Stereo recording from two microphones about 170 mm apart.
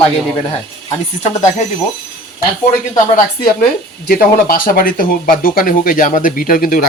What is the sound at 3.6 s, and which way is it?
Speech, 60° left (ahead or behind).